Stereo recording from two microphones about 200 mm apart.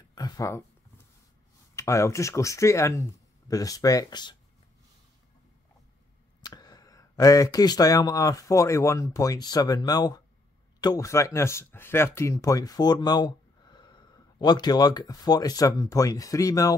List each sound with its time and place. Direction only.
0.1 s a sound: 15° left (ahead or behind)
1.8 s speech: 15° left (ahead or behind)
6.4 s speech: 20° left (ahead or behind)